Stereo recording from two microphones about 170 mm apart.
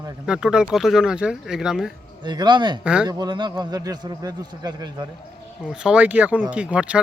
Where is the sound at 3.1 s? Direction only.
25° right (ahead or behind).